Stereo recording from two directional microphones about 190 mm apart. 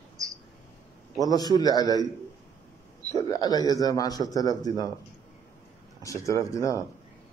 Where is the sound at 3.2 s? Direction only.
20° left (ahead or behind).